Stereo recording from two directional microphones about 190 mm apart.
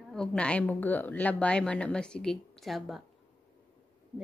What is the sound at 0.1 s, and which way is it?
A woman's voice, 5° left (ahead or behind).